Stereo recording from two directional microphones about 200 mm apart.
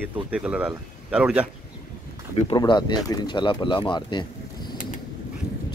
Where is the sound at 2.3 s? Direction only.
25° left (ahead or behind).